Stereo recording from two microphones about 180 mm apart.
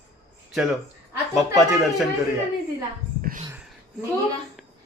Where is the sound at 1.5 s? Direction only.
Centre (ahead or behind).